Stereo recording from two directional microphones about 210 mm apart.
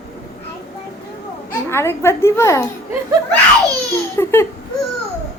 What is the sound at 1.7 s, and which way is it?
Speech, 10° left (ahead or behind).